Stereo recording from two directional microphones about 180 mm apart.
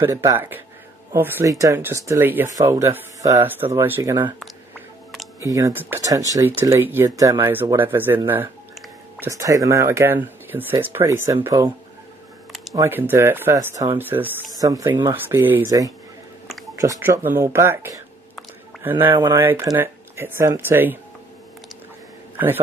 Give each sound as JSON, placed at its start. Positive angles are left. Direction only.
{"t": 0.0, "sound": "speech", "side_deg": -20}
{"t": 5.4, "sound": "speech", "side_deg": -15}
{"t": 9.2, "sound": "speech", "side_deg": -20}
{"t": 12.7, "sound": "speech", "side_deg": -15}